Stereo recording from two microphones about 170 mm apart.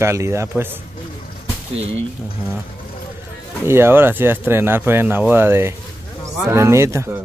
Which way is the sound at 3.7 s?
15° right (ahead or behind).